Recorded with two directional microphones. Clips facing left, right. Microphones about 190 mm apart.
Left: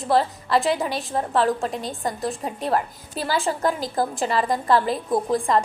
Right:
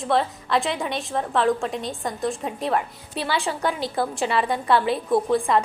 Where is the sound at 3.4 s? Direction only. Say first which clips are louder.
Left 2 dB; 40° left (ahead or behind).